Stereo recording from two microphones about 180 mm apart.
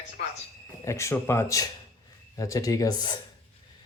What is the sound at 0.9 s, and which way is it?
Speech, 15° left (ahead or behind).